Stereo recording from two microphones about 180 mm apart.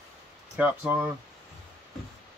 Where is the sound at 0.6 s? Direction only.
10° right (ahead or behind).